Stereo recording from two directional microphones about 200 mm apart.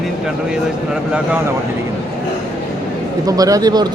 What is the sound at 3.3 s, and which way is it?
Speech, 15° right (ahead or behind).